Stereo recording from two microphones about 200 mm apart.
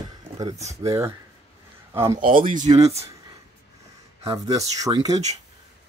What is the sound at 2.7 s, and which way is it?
Speech, 20° right (ahead or behind).